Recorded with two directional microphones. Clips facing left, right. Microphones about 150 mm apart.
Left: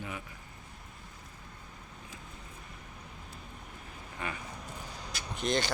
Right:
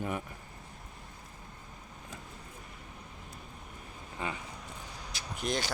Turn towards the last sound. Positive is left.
turn(degrees=-5)  # may be behind; listen again after turning